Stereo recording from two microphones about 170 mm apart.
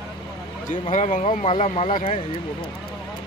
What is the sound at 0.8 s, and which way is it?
Speech, 45° left (ahead or behind).